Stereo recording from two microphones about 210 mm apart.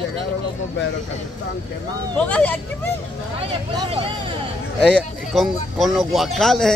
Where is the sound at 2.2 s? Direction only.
5° left (ahead or behind).